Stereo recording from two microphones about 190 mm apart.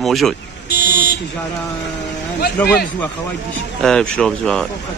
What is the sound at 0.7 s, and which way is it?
Vehicle, 55° left (ahead or behind).